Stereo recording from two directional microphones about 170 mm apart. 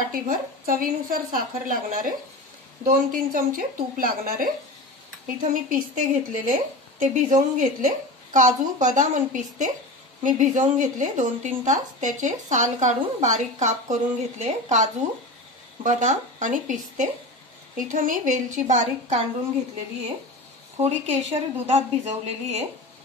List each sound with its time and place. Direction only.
0.1 s a woman's voice: 55° right (ahead or behind)
20.7 s a woman's voice: 40° right (ahead or behind)